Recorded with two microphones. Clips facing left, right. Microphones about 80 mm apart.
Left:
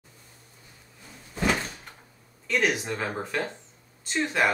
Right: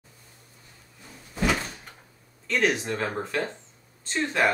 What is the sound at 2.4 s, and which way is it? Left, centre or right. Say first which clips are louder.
Speech: right 1 dB; centre.